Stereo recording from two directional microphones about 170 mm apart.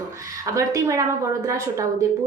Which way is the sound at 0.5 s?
20° right (ahead or behind).